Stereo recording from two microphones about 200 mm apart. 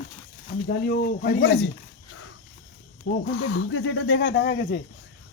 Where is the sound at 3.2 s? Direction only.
90° left; by 4.8 s 55° left (ahead or behind).